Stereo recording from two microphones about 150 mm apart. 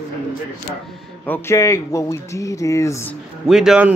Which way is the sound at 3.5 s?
5° right (ahead or behind).